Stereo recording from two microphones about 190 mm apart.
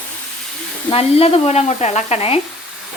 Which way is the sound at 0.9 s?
30° left (ahead or behind).